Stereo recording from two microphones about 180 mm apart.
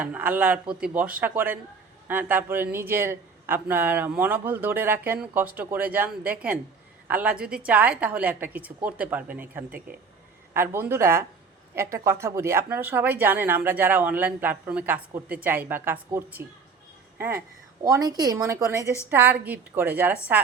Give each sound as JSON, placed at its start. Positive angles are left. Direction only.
{"t": 0.0, "sound": "speech", "side_deg": -10}